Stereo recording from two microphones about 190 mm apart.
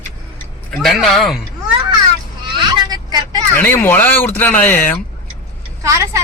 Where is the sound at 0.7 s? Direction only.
Centre (ahead or behind).